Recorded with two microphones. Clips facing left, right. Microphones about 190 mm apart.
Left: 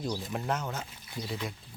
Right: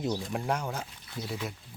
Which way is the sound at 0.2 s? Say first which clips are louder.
Right 2 dB; 5° left (ahead or behind).